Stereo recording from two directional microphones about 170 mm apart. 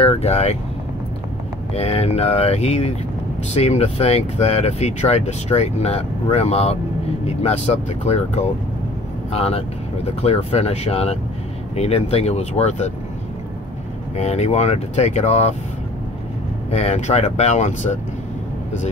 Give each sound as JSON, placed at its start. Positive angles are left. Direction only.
{"t": 0.0, "sound": "speech", "side_deg": 40}
{"t": 1.7, "sound": "speech", "side_deg": 35}
{"t": 14.1, "sound": "speech", "side_deg": 40}
{"t": 16.7, "sound": "speech", "side_deg": 40}